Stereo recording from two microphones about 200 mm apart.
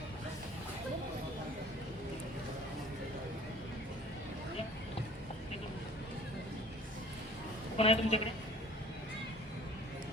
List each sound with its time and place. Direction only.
7.8 s a woman's voice: 30° left (ahead or behind)